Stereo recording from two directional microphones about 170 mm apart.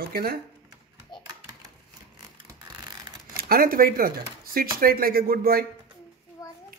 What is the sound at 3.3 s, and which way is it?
Speech, 60° right (ahead or behind).